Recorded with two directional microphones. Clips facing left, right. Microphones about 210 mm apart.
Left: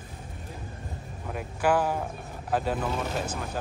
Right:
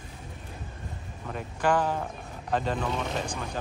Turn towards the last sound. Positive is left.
turn(degrees=5)  # may be behind; listen again after turning